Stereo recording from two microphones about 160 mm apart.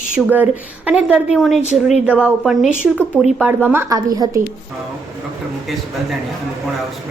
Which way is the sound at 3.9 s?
20° right (ahead or behind).